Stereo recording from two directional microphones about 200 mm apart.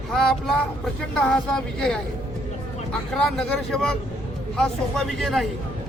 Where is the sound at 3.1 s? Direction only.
Centre (ahead or behind).